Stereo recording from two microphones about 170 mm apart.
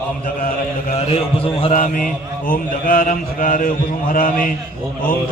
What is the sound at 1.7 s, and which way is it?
Mantra, 50° left (ahead or behind).